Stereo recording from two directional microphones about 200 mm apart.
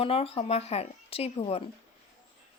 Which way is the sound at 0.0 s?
30° left (ahead or behind).